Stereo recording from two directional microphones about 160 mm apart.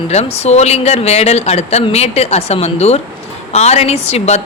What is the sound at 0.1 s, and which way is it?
A woman's voice, 40° left (ahead or behind).